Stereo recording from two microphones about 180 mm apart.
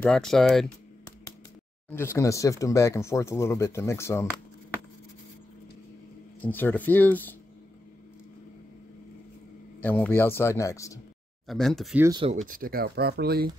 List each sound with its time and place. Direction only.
0.0 s speech: 5° left (ahead or behind)
1.9 s speech: 15° left (ahead or behind)
6.4 s speech: 10° left (ahead or behind)
9.8 s speech: 10° left (ahead or behind)
11.4 s speech: centre (ahead or behind)
12.2 s speech: 35° right (ahead or behind)
12.4 s speech: 50° right (ahead or behind)